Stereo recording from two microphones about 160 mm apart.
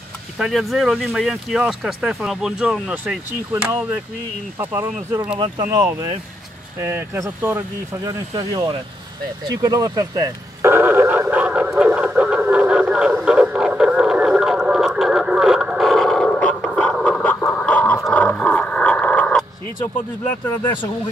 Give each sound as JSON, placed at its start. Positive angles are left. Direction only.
{"t": 0.4, "sound": "speech", "side_deg": 0}
{"t": 5.4, "sound": "speech", "side_deg": -25}
{"t": 9.6, "sound": "a sound", "side_deg": -25}